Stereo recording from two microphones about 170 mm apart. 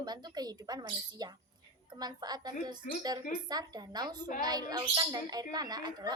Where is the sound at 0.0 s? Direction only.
25° right (ahead or behind).